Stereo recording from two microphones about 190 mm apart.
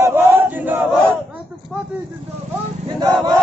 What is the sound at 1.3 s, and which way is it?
Speech, 5° right (ahead or behind).